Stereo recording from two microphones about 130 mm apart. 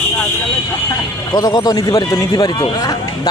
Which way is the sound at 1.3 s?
35° left (ahead or behind).